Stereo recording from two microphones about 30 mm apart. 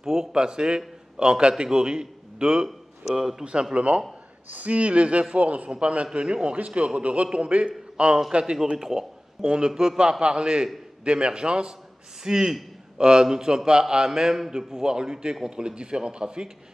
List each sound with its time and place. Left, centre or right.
0.0 s a man's voice: centre
0.3 s a man's voice: right
3.2 s a man's voice: centre
3.7 s a man's voice: right
8.7 s a sound: centre
9.7 s a man's voice: right